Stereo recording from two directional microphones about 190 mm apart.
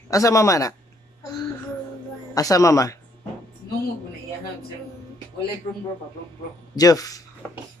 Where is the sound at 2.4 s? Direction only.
15° left (ahead or behind).